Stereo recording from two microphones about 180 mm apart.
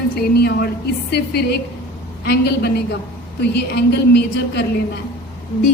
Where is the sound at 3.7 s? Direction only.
70° left (ahead or behind).